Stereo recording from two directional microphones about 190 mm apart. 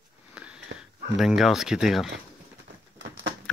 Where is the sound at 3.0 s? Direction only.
80° right.